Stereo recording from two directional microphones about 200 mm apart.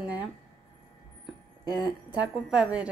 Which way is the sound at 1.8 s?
5° right (ahead or behind).